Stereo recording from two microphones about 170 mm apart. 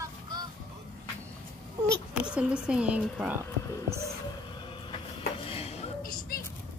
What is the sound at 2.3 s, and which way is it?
A woman's voice, 5° right (ahead or behind).